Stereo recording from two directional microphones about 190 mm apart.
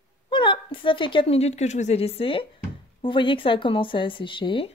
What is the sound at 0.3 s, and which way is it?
A woman's voice, 25° left (ahead or behind).